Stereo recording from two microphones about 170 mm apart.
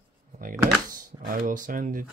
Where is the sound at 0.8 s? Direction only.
55° right (ahead or behind).